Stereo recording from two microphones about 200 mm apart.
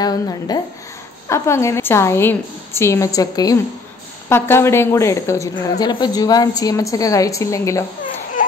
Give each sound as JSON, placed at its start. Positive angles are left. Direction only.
{"t": 0.0, "sound": "a woman's voice", "side_deg": 20}